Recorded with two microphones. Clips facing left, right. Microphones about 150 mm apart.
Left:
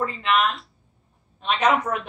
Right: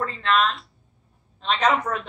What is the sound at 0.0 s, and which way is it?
A woman's voice, 10° left (ahead or behind).